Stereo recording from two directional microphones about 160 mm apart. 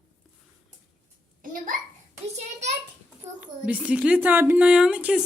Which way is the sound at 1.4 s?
55° right (ahead or behind).